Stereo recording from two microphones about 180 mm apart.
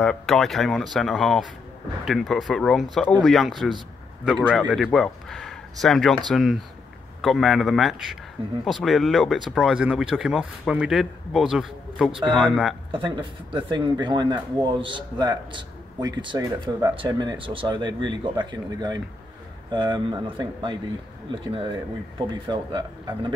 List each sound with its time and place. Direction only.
0.0 s a man's voice: 5° left (ahead or behind)
12.9 s speech: 25° right (ahead or behind)